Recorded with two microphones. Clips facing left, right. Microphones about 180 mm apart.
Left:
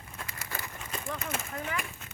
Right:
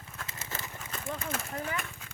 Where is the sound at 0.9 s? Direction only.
5° left (ahead or behind).